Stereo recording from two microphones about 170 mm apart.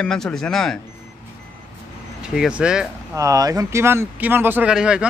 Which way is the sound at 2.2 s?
5° right (ahead or behind).